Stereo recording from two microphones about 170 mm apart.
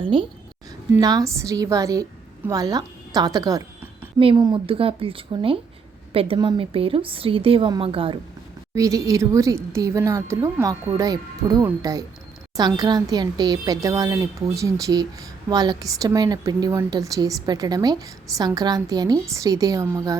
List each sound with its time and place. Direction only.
0.0 s a woman's voice: 30° right (ahead or behind)
8.7 s a woman's voice: 20° right (ahead or behind)